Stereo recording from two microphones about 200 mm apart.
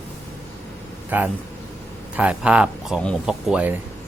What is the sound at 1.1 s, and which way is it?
Speech, 10° right (ahead or behind).